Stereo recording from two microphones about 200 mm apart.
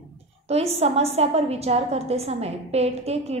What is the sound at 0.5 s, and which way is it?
A woman's voice, 30° right (ahead or behind).